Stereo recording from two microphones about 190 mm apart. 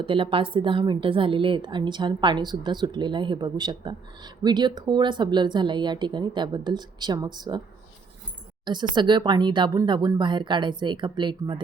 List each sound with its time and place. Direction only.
0.0 s a woman's voice: 25° right (ahead or behind)
8.6 s a woman's voice: 25° right (ahead or behind)